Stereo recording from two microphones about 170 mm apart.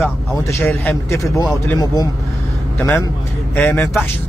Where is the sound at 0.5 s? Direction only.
10° left (ahead or behind).